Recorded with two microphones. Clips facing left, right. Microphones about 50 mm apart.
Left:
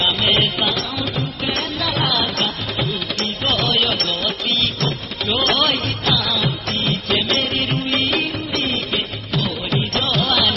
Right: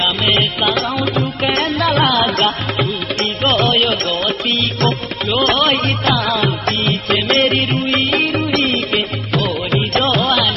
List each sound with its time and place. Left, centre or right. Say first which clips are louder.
0.0 s music: right 2 dB; right
8.5 s music: right 6 dB; right